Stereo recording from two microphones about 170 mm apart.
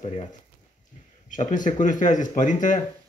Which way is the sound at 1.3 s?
50° left (ahead or behind).